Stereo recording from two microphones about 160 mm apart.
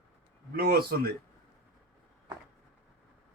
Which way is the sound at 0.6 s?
75° right (ahead or behind).